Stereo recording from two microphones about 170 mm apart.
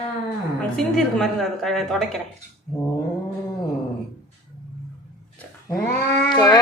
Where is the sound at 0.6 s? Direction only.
Centre (ahead or behind).